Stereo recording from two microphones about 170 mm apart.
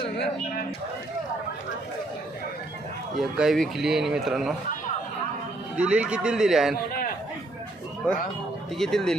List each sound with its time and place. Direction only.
3.2 s a man's voice: centre (ahead or behind)
5.7 s a man's voice: 5° right (ahead or behind)
8.8 s a man's voice: centre (ahead or behind)